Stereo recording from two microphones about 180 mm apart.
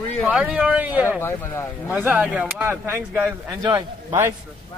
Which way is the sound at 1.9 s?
10° right (ahead or behind).